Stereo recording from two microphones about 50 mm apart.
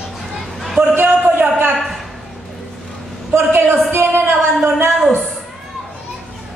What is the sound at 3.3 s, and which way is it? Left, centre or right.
Speech, right.